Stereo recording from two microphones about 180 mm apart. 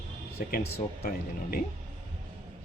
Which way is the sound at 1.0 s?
55° left (ahead or behind).